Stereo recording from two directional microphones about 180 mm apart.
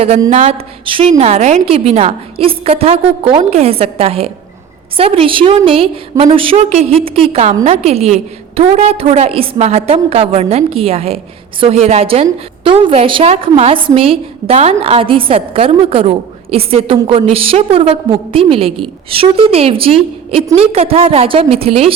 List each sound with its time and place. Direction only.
0.3 s a woman's voice: 40° right (ahead or behind)